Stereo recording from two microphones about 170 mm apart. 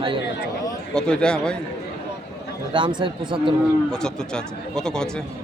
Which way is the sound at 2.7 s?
30° right (ahead or behind).